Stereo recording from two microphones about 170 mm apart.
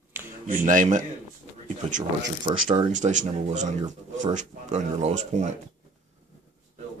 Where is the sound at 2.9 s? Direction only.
45° right (ahead or behind).